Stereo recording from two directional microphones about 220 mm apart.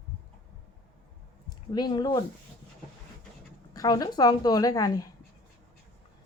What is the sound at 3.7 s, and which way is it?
A woman's voice, 15° left (ahead or behind).